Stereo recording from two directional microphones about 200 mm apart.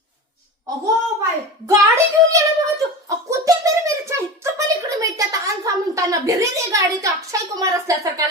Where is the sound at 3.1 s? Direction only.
15° right (ahead or behind).